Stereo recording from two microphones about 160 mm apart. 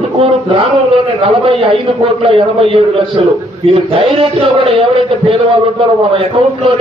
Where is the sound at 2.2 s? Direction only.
35° right (ahead or behind).